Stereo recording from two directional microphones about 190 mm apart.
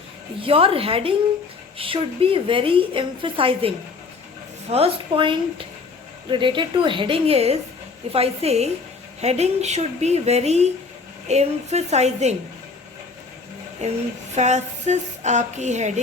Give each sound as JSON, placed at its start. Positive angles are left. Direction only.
{"t": 0.3, "sound": "a woman's voice", "side_deg": -30}
{"t": 4.7, "sound": "a woman's voice", "side_deg": -30}
{"t": 13.8, "sound": "speech", "side_deg": -35}